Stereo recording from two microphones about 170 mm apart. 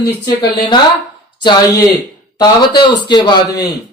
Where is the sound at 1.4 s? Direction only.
25° left (ahead or behind).